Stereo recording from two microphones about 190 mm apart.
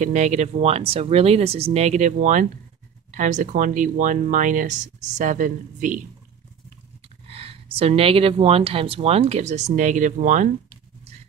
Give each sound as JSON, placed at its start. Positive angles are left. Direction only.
{"t": 0.0, "sound": "speech", "side_deg": -40}
{"t": 7.2, "sound": "speech", "side_deg": -30}